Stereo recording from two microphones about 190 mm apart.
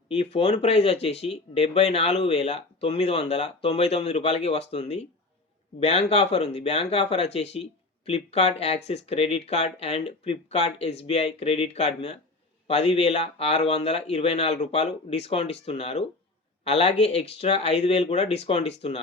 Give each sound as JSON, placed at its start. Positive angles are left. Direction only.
{"t": 0.1, "sound": "speech", "side_deg": 30}